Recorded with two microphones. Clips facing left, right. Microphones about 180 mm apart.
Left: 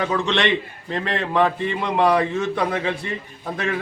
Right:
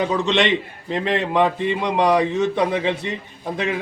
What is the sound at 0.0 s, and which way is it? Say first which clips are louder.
A man's voice: right 2 dB; 20° right (ahead or behind).